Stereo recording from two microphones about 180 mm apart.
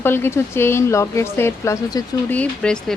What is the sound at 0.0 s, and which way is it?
Speech, 15° left (ahead or behind).